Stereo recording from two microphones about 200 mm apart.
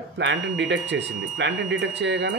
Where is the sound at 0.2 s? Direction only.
65° right (ahead or behind).